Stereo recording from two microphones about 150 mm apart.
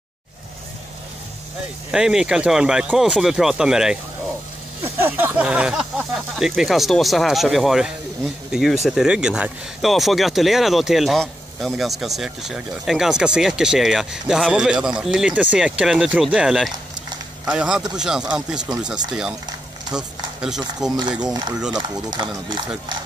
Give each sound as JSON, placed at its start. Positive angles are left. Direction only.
{"t": 1.9, "sound": "speech", "side_deg": -5}
{"t": 20.8, "sound": "speech", "side_deg": -5}
{"t": 21.2, "sound": "speech", "side_deg": -30}